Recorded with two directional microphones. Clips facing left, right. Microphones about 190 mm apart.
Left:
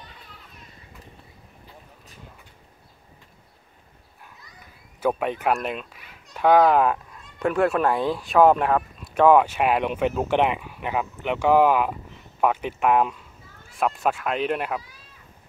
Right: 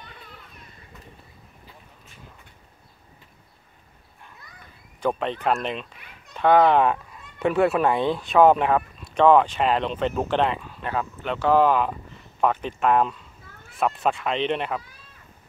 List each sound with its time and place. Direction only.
5.0 s speech: 10° left (ahead or behind)
13.4 s a sound: 60° right (ahead or behind)
13.7 s speech: centre (ahead or behind)